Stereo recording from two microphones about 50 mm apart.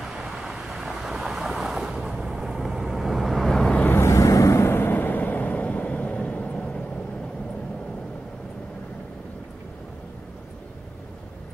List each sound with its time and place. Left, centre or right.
0.2 s vehicle: centre
3.9 s vehicle: left
4.6 s vehicle: left